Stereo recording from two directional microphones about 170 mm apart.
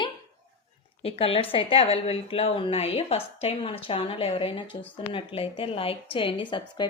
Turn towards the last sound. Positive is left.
turn(degrees=25)  # may be behind; listen again after turning